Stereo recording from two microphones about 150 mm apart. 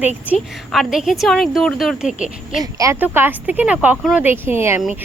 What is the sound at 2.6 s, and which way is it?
A woman's voice, 25° right (ahead or behind).